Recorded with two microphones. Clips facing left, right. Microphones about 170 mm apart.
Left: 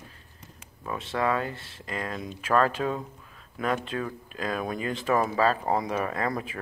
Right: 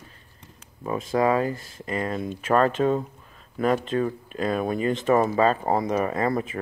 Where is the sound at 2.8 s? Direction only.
15° right (ahead or behind).